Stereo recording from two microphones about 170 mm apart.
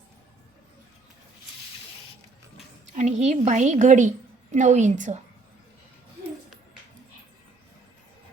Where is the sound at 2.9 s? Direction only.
45° right (ahead or behind).